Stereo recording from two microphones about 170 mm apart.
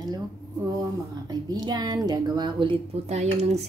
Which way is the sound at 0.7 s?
20° right (ahead or behind).